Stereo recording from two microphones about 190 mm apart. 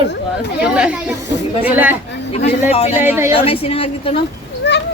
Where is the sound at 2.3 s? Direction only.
35° left (ahead or behind).